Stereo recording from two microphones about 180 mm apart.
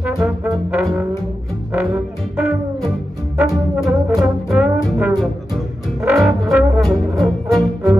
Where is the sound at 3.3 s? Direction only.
20° right (ahead or behind).